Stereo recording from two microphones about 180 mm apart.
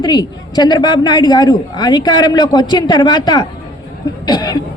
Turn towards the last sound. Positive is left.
turn(degrees=20)  # may be behind; listen again after turning